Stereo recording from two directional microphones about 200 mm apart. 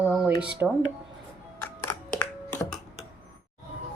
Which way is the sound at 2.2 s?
10° left (ahead or behind).